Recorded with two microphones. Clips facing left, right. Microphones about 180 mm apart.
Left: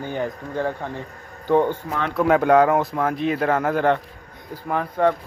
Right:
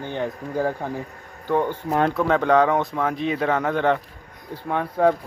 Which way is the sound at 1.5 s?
15° left (ahead or behind).